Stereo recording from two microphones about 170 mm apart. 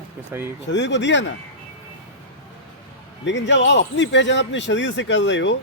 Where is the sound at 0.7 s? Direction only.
90° left.